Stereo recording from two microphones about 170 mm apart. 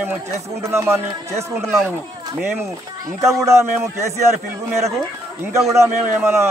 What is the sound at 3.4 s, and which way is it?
Speech, 15° right (ahead or behind).